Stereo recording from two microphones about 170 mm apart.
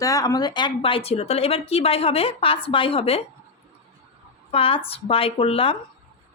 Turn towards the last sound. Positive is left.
turn(degrees=35)  # may be behind; listen again after turning